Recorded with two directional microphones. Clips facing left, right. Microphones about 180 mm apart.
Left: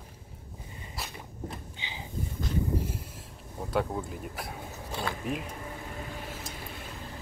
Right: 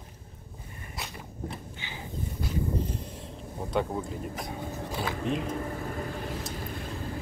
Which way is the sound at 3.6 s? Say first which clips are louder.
Right 1 dB; centre (ahead or behind).